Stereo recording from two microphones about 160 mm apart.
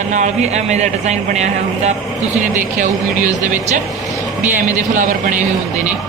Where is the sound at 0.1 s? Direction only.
45° right (ahead or behind).